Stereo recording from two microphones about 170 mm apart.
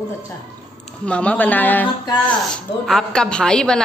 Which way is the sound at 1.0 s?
5° left (ahead or behind).